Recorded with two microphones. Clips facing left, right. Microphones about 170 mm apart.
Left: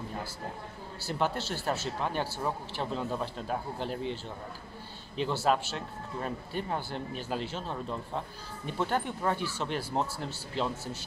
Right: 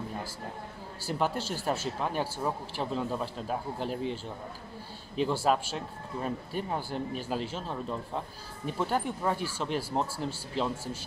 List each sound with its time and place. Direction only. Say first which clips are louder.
1.0 s speech: right 1 dB; 5° right (ahead or behind)
5.3 s speech: left 1 dB; 10° right (ahead or behind)